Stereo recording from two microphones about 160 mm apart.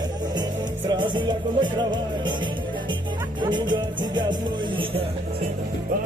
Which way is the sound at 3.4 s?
30° right (ahead or behind).